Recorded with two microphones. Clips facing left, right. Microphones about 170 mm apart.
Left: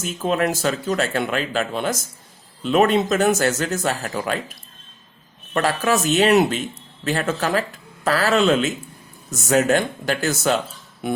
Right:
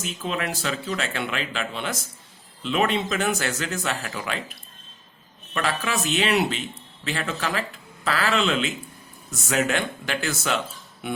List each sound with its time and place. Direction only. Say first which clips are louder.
0.0 s a man's voice: left 7 dB; 45° left (ahead or behind)
5.5 s a man's voice: left 6 dB; 45° left (ahead or behind)